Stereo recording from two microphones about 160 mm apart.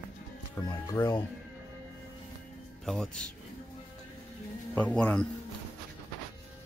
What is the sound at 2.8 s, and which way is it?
Speech, centre (ahead or behind).